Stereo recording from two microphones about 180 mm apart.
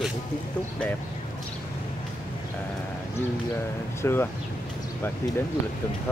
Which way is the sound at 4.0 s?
15° left (ahead or behind).